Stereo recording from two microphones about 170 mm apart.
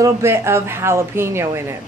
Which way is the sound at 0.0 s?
15° right (ahead or behind).